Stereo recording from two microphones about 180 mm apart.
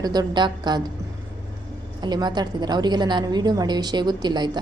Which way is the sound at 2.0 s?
25° right (ahead or behind).